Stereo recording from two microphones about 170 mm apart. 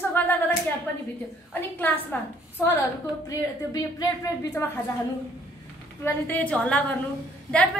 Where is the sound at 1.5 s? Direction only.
10° left (ahead or behind).